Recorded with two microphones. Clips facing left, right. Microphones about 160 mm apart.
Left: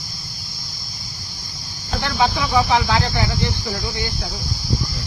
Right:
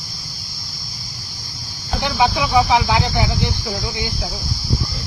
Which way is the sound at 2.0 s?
15° right (ahead or behind).